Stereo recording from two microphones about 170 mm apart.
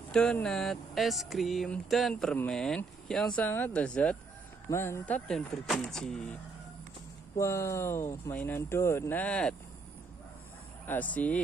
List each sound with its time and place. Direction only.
0.1 s speech: 5° left (ahead or behind)
7.3 s speech: 15° left (ahead or behind)
10.9 s speech: 10° left (ahead or behind)